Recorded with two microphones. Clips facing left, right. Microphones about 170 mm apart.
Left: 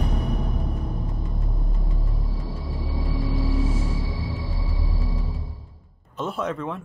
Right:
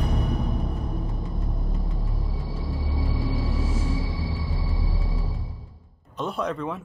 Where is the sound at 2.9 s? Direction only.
Centre (ahead or behind).